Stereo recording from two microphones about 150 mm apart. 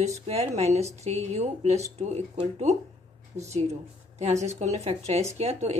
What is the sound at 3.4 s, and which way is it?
A woman's voice, 50° right (ahead or behind).